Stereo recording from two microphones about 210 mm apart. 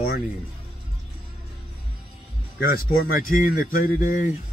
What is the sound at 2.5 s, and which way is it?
Speech, 45° left (ahead or behind).